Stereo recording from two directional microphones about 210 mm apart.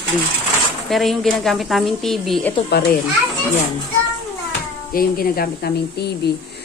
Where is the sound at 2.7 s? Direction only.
50° left (ahead or behind).